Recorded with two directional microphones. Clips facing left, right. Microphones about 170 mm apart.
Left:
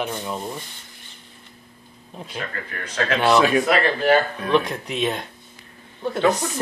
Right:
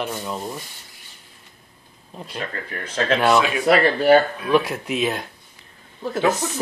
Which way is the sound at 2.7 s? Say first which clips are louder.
Right 3 dB; 30° right (ahead or behind).